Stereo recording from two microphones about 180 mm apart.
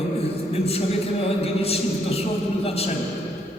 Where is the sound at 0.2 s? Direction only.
35° left (ahead or behind).